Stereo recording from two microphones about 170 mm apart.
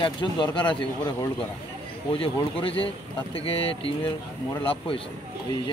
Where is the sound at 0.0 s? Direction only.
25° left (ahead or behind).